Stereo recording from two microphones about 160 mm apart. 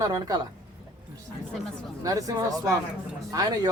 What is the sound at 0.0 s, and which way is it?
Speech, 20° right (ahead or behind).